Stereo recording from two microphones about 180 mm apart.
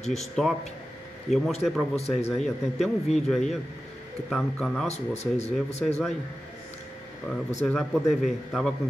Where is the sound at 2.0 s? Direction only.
35° left (ahead or behind).